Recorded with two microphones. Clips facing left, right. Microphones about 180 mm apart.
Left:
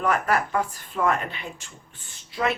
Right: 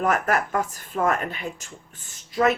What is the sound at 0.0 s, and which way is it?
Speech, 45° right (ahead or behind).